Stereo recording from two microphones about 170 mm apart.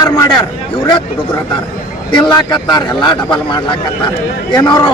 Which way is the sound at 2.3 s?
25° left (ahead or behind).